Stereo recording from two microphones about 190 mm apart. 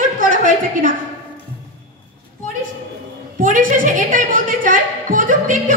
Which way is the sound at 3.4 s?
45° right (ahead or behind).